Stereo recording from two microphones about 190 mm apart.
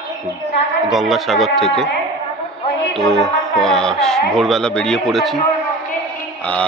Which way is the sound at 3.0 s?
Centre (ahead or behind).